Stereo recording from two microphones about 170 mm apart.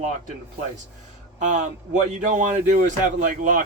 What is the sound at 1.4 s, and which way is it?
Speech, 45° right (ahead or behind).